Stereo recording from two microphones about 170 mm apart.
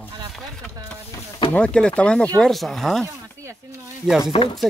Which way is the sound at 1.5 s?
5° left (ahead or behind).